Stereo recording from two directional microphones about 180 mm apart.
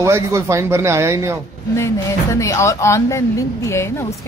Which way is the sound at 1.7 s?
15° left (ahead or behind).